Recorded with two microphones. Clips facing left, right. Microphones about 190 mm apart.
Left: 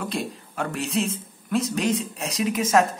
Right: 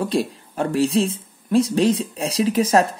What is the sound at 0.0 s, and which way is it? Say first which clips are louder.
Speech: right 7 dB; 30° right (ahead or behind).